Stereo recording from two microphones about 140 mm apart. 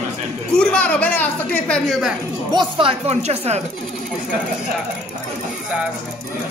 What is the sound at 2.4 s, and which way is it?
A woman's voice, 35° right (ahead or behind).